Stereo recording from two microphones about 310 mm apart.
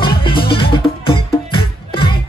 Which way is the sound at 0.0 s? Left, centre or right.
Centre.